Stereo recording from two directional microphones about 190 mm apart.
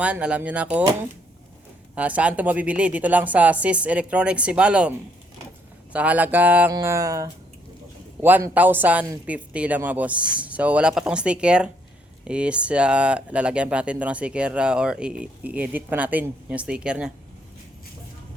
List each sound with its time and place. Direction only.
0.0 s speech: 5° right (ahead or behind)
2.0 s speech: 5° right (ahead or behind)